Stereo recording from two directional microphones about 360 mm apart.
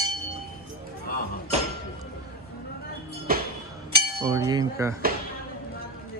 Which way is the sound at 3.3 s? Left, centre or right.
Right.